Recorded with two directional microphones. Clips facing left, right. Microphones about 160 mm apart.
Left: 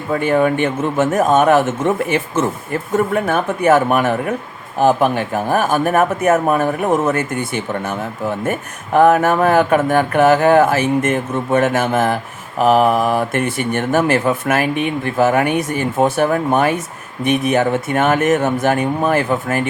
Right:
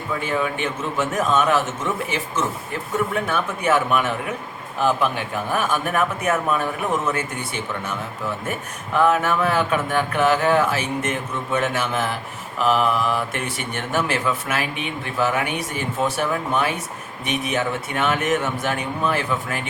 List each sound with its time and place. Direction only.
0.1 s a man's voice: 55° left (ahead or behind)